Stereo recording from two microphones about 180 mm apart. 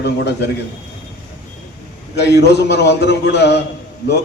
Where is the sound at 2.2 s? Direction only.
70° left (ahead or behind).